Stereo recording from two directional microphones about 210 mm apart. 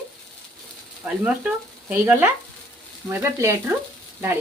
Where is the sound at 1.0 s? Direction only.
5° right (ahead or behind).